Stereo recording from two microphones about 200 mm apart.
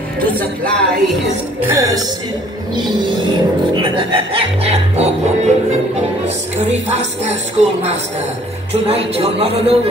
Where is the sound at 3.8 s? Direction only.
25° right (ahead or behind).